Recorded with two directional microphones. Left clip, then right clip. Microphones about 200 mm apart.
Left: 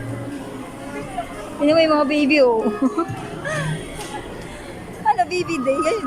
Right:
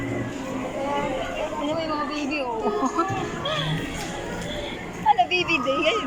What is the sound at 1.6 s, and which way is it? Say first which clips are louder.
Speech: left 15 dB; 50° left (ahead or behind).